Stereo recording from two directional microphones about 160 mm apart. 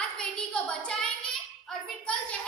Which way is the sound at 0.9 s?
5° left (ahead or behind).